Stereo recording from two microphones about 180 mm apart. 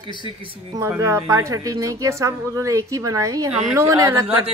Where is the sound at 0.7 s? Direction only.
20° right (ahead or behind).